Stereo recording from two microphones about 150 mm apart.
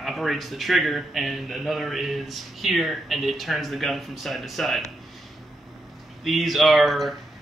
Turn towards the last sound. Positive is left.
turn(degrees=0)  # may be behind; listen again after turning